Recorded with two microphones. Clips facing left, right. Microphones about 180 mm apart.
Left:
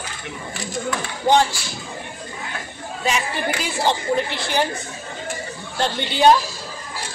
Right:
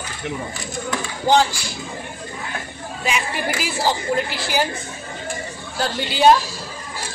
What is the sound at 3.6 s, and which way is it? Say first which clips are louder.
A woman's voice: even; 5° right (ahead or behind).